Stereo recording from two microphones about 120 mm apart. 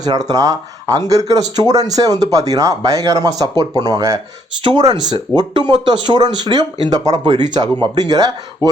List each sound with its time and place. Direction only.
0.0 s speech: 30° right (ahead or behind)